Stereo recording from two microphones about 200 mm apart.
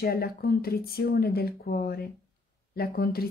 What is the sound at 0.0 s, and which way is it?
Speech, 50° left (ahead or behind).